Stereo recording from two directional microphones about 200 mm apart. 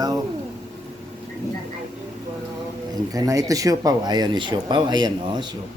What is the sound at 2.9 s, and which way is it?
Speech, 20° right (ahead or behind).